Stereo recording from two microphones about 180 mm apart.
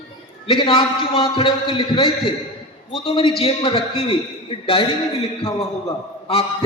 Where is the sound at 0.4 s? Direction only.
30° left (ahead or behind).